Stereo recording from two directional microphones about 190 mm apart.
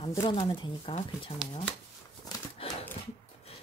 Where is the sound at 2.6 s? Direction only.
30° left (ahead or behind).